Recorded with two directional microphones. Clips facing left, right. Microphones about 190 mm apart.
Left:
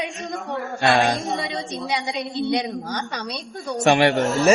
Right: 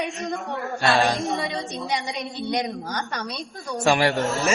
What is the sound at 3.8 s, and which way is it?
Speech, 20° left (ahead or behind).